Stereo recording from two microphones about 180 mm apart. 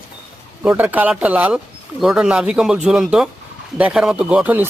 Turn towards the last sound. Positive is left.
turn(degrees=-10)  # may be behind; listen again after turning